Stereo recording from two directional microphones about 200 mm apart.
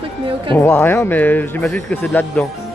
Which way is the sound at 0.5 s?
10° left (ahead or behind).